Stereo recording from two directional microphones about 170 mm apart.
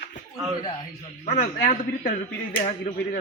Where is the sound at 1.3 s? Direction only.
45° left (ahead or behind).